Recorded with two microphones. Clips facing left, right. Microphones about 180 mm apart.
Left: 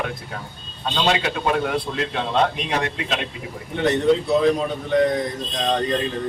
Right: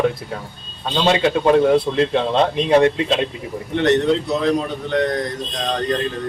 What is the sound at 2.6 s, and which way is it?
Speech, 30° right (ahead or behind).